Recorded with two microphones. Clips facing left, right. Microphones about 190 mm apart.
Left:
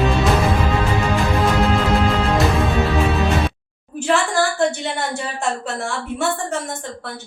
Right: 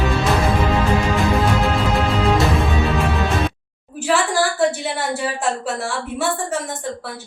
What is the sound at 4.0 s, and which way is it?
A woman's voice, 5° right (ahead or behind).